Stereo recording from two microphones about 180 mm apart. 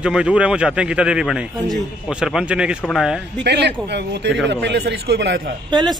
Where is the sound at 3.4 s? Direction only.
70° right (ahead or behind).